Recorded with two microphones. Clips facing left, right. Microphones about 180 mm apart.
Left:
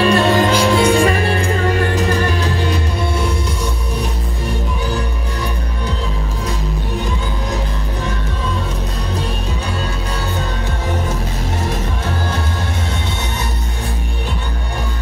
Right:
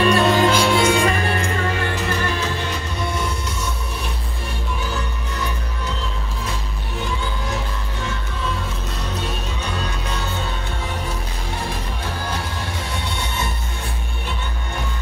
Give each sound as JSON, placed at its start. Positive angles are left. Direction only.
{"t": 0.0, "sound": "music", "side_deg": 35}